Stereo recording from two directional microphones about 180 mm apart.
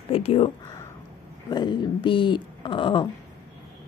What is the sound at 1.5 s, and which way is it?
Speech, 25° left (ahead or behind).